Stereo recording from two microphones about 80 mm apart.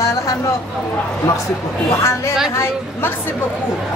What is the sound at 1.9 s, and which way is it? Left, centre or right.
A woman's voice, left.